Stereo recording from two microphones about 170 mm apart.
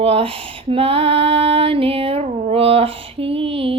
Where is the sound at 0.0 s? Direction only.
35° right (ahead or behind).